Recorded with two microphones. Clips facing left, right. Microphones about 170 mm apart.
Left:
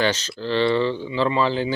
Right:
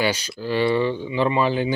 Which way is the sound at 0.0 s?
10° right (ahead or behind).